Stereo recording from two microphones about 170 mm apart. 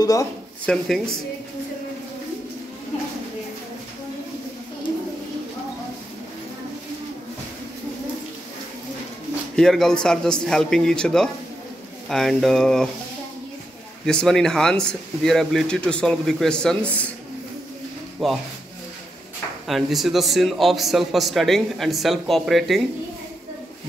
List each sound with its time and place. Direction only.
0.0 s speech: 20° left (ahead or behind)
0.7 s a man's voice: 5° left (ahead or behind)
9.6 s a man's voice: 5° left (ahead or behind)
14.0 s a man's voice: 5° left (ahead or behind)
18.2 s a man's voice: centre (ahead or behind)
19.7 s a man's voice: centre (ahead or behind)